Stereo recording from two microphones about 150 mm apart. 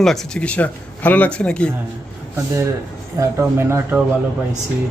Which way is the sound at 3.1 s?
15° right (ahead or behind).